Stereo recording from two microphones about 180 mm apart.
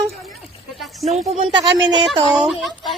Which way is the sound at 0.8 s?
Centre (ahead or behind).